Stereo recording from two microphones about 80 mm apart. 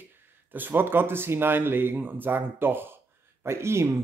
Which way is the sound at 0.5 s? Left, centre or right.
Right.